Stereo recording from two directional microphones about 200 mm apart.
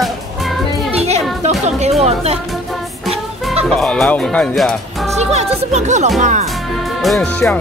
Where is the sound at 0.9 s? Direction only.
30° right (ahead or behind).